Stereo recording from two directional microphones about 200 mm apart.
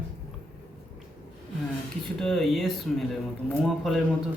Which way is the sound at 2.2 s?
Centre (ahead or behind).